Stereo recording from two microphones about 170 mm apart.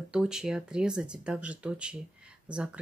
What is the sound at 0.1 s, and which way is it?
Speech, 5° right (ahead or behind).